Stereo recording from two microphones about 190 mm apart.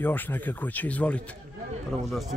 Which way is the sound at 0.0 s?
10° left (ahead or behind).